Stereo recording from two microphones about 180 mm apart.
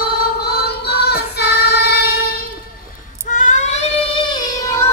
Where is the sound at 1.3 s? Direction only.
65° left (ahead or behind).